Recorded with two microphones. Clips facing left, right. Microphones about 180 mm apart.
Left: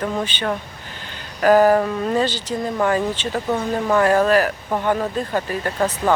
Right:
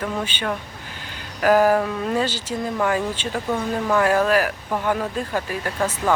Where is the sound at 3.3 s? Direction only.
10° left (ahead or behind).